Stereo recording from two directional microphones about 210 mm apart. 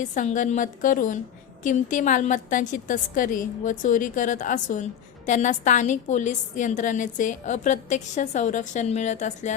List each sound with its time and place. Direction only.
0.0 s a woman's voice: 35° left (ahead or behind)